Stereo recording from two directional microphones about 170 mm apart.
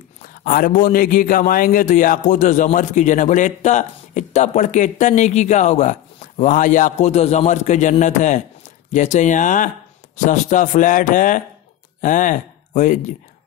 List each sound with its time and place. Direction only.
0.4 s a man's voice: 55° left (ahead or behind)